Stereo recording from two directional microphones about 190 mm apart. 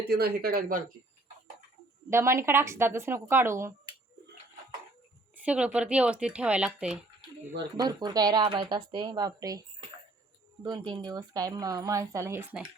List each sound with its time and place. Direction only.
0.0 s speech: 55° right (ahead or behind)
2.0 s speech: 15° right (ahead or behind)
5.5 s speech: 5° right (ahead or behind)
7.8 s speech: 20° right (ahead or behind)